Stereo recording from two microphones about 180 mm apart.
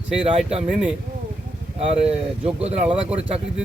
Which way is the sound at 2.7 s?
35° right (ahead or behind).